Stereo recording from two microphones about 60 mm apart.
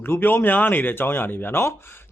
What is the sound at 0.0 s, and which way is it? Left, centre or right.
Speech, left.